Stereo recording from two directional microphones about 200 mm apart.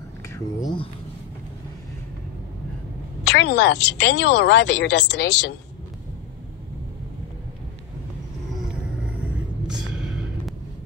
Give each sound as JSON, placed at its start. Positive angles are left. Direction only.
{"t": 0.3, "sound": "speech", "side_deg": 20}
{"t": 3.3, "sound": "speech", "side_deg": 60}
{"t": 9.7, "sound": "a sound", "side_deg": -5}